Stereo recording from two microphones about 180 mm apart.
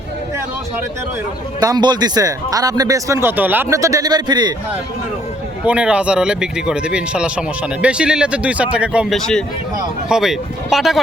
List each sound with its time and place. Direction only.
1.6 s speech: 25° right (ahead or behind)
5.6 s speech: 5° right (ahead or behind)